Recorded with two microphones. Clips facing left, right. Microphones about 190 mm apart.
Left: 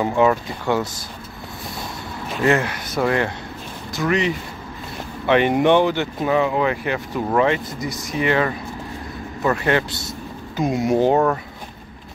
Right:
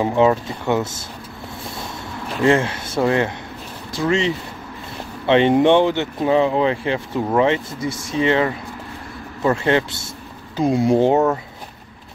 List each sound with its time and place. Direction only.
0.0 s speech: 25° right (ahead or behind)
2.4 s speech: 25° right (ahead or behind)